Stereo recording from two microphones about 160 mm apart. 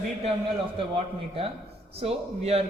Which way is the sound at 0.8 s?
35° right (ahead or behind).